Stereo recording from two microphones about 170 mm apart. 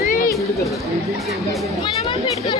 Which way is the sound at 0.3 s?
20° left (ahead or behind).